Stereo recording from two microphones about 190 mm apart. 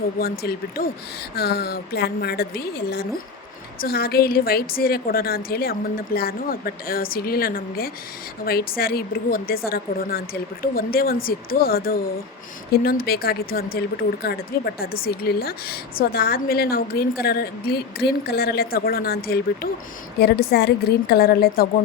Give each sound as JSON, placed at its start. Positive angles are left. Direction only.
{"t": 0.2, "sound": "a woman's voice", "side_deg": 55}